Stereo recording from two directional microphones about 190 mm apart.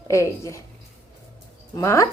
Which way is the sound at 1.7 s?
15° left (ahead or behind).